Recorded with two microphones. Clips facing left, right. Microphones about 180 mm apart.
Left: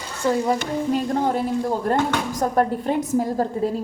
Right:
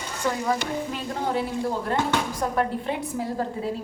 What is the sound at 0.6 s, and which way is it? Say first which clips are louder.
A child's voice: left 7 dB; 45° left (ahead or behind).